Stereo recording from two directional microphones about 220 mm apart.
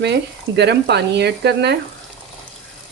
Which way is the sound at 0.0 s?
50° right (ahead or behind).